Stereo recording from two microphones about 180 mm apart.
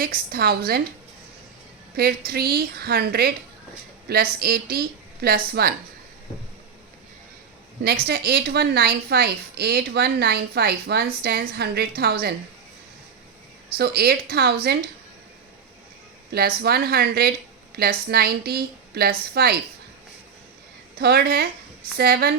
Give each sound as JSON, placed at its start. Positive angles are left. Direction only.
{"t": 0.0, "sound": "a woman's voice", "side_deg": -55}
{"t": 2.0, "sound": "a woman's voice", "side_deg": -60}
{"t": 8.0, "sound": "a woman's voice", "side_deg": -60}
{"t": 13.7, "sound": "a woman's voice", "side_deg": -60}
{"t": 16.6, "sound": "a woman's voice", "side_deg": -60}
{"t": 21.0, "sound": "a woman's voice", "side_deg": -60}